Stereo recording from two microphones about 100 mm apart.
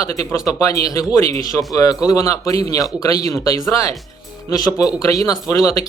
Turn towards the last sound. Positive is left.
turn(degrees=35)  # may be behind; listen again after turning